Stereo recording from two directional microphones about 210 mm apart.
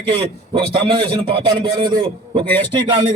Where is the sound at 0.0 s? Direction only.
25° right (ahead or behind).